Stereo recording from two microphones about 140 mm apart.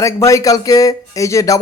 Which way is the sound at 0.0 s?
20° left (ahead or behind).